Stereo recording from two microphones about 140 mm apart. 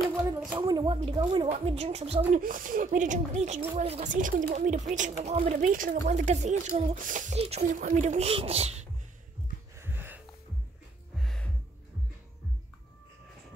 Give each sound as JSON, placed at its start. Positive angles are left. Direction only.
{"t": 0.6, "sound": "a woman's voice", "side_deg": -30}
{"t": 1.5, "sound": "speech", "side_deg": -45}
{"t": 2.3, "sound": "a woman's voice", "side_deg": -70}
{"t": 4.1, "sound": "a woman's voice", "side_deg": -70}
{"t": 5.7, "sound": "a woman's voice", "side_deg": -80}
{"t": 7.3, "sound": "speech", "side_deg": -45}
{"t": 9.8, "sound": "a sound", "side_deg": -15}
{"t": 11.1, "sound": "music", "side_deg": 5}